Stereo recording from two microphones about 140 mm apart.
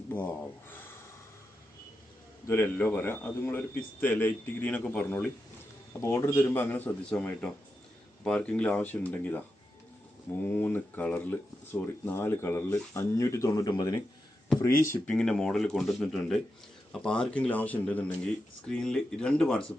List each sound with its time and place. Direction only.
0.1 s speech: 15° left (ahead or behind)
2.5 s speech: 15° left (ahead or behind)
6.0 s speech: 20° left (ahead or behind)
10.4 s speech: 15° left (ahead or behind)
14.9 s speech: 10° left (ahead or behind)